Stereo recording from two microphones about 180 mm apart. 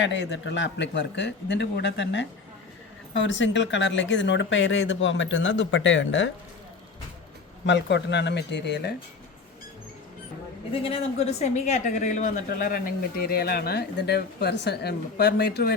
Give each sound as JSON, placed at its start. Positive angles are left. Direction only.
{"t": 0.0, "sound": "a man's voice", "side_deg": 85}
{"t": 3.2, "sound": "speech", "side_deg": 90}
{"t": 7.7, "sound": "speech", "side_deg": 75}
{"t": 10.7, "sound": "a woman's voice", "side_deg": 35}